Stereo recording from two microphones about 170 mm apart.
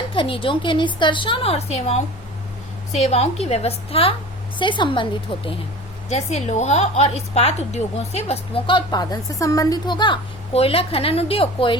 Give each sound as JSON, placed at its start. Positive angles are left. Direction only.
{"t": 0.1, "sound": "a woman's voice", "side_deg": 30}